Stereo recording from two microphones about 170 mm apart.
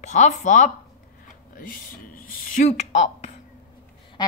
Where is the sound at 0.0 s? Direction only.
45° left (ahead or behind).